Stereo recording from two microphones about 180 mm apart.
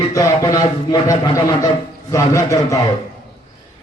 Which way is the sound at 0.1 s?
20° left (ahead or behind).